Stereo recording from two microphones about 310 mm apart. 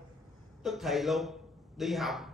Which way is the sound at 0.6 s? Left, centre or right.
Centre.